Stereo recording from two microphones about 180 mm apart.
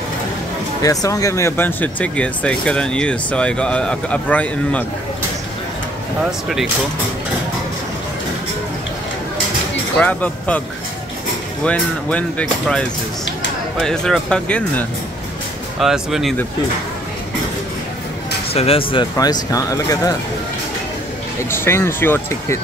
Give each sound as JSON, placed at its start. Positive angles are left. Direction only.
{"t": 0.8, "sound": "speech", "side_deg": 20}
{"t": 9.9, "sound": "speech", "side_deg": 10}
{"t": 11.6, "sound": "speech", "side_deg": 5}
{"t": 18.5, "sound": "speech", "side_deg": 30}
{"t": 21.5, "sound": "speech", "side_deg": 15}